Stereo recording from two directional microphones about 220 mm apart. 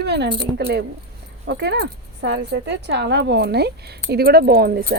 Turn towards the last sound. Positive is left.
turn(degrees=-45)  # may be behind; listen again after turning